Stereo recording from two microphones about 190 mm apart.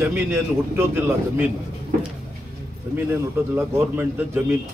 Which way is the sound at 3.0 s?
10° right (ahead or behind).